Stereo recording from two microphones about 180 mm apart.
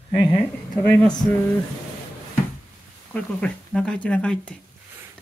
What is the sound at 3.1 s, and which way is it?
Speech, 5° left (ahead or behind).